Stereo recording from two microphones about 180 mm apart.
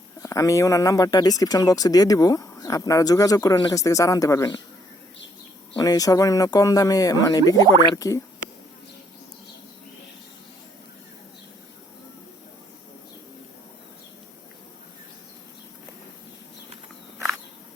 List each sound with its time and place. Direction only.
0.2 s speech: 20° left (ahead or behind)
5.7 s speech: 20° left (ahead or behind)